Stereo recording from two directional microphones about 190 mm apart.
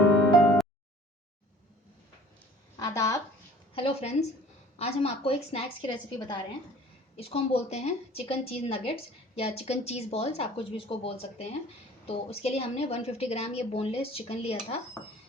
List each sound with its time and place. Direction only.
2.7 s a woman's voice: 15° left (ahead or behind)
3.8 s a woman's voice: 30° left (ahead or behind)